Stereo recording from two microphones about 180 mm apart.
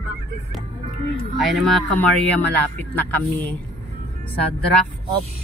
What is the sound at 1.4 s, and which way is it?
Speech, centre (ahead or behind).